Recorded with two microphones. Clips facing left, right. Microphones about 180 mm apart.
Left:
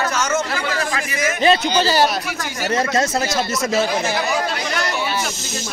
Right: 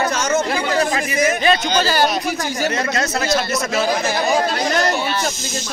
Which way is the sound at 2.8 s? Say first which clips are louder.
Left 2 dB; 25° left (ahead or behind).